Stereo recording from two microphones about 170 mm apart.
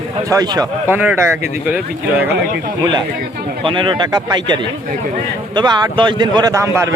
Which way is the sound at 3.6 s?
30° right (ahead or behind).